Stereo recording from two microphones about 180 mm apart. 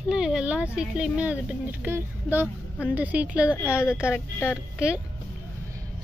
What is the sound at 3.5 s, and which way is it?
Speech, 10° left (ahead or behind).